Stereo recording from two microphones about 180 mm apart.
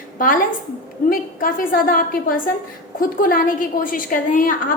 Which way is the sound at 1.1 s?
50° left (ahead or behind).